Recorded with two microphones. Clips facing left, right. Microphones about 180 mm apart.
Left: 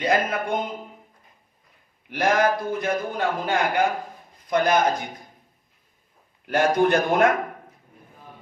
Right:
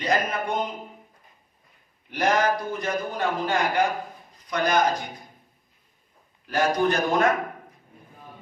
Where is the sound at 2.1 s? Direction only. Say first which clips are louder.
Left 2 dB; 55° left (ahead or behind).